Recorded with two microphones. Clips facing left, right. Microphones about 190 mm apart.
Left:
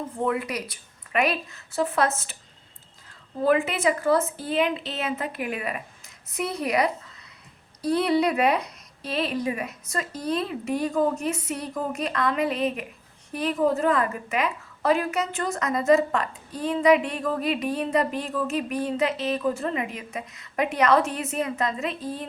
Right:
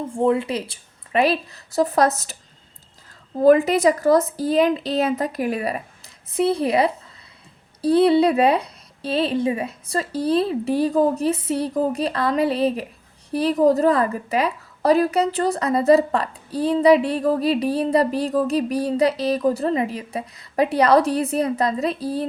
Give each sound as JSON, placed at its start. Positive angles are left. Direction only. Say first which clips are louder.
{"t": 0.1, "sound": "a woman's voice", "louder": "right 8 dB", "side_deg": -30}
{"t": 3.4, "sound": "a woman's voice", "louder": "right 7 dB", "side_deg": -40}